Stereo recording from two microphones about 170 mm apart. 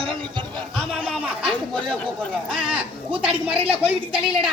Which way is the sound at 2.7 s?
5° right (ahead or behind).